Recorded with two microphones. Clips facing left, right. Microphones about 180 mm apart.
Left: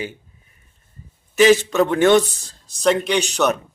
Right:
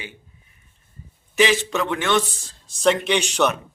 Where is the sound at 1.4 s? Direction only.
40° left (ahead or behind).